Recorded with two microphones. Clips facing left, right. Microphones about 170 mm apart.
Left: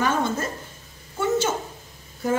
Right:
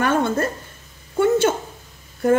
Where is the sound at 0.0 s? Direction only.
60° right (ahead or behind).